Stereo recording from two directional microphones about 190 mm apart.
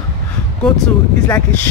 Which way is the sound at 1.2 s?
15° left (ahead or behind).